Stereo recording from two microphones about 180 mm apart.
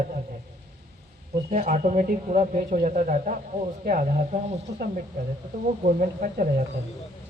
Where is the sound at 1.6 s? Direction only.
40° right (ahead or behind).